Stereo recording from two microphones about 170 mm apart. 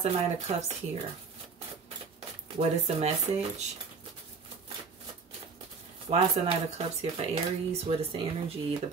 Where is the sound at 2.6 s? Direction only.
35° right (ahead or behind).